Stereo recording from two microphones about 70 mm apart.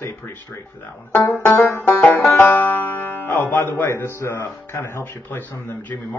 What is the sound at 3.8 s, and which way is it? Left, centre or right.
Speech, left.